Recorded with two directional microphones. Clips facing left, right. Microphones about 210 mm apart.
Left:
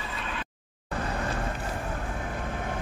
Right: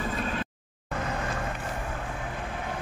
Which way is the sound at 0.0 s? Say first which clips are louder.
Right 6 dB; 45° right (ahead or behind).